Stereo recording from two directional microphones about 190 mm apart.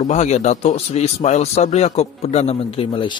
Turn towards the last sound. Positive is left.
turn(degrees=30)  # may be behind; listen again after turning